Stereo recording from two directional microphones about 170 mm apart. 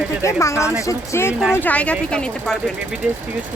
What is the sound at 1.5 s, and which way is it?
Speech, 10° left (ahead or behind).